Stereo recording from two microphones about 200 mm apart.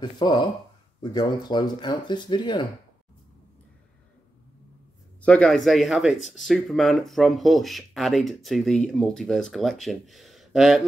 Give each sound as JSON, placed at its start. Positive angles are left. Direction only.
{"t": 0.0, "sound": "speech", "side_deg": 20}
{"t": 5.2, "sound": "speech", "side_deg": 5}